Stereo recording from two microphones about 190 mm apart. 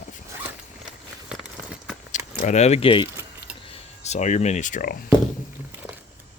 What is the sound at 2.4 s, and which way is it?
Speech, 35° left (ahead or behind).